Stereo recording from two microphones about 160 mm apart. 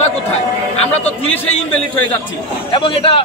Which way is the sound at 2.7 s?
35° left (ahead or behind).